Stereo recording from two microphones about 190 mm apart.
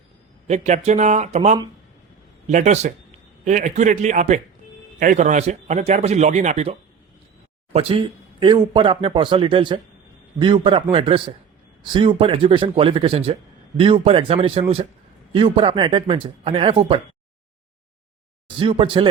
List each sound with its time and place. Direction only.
0.4 s a man's voice: 35° right (ahead or behind)
18.4 s speech: 25° right (ahead or behind)